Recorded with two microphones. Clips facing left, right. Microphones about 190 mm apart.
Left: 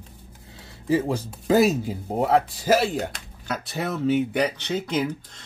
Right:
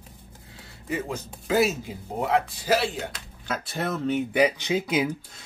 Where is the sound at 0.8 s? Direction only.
30° left (ahead or behind).